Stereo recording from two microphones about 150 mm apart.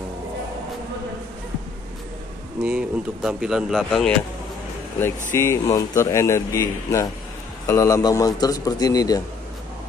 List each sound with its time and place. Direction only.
2.6 s speech: 5° right (ahead or behind)
5.3 s speech: 20° left (ahead or behind)